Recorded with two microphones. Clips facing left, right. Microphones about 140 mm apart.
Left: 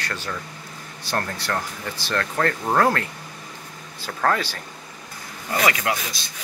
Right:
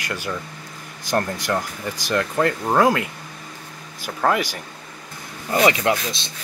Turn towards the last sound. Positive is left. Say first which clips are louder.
# right 5 dB
turn(degrees=-25)  # may be behind; listen again after turning